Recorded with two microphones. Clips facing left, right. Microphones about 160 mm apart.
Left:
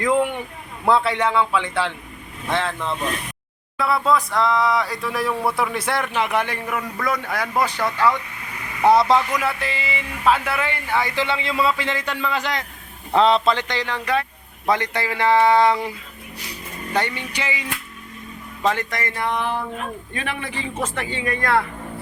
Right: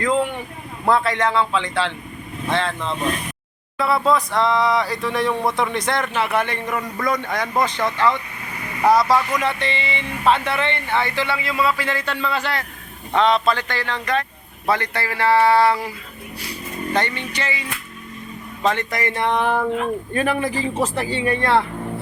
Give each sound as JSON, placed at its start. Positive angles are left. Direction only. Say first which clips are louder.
{"t": 0.0, "sound": "speech", "louder": "left 1 dB", "side_deg": 10}
{"t": 3.8, "sound": "speech", "louder": "right 1 dB", "side_deg": 0}
{"t": 8.9, "sound": "speech", "louder": "left 1 dB", "side_deg": 25}
{"t": 9.3, "sound": "speech", "louder": "right 2 dB", "side_deg": 5}
{"t": 13.1, "sound": "speech", "louder": "left 1 dB", "side_deg": 30}
{"t": 19.0, "sound": "a man's voice", "louder": "right 5 dB", "side_deg": -30}
{"t": 20.1, "sound": "a man's voice", "louder": "right 8 dB", "side_deg": -40}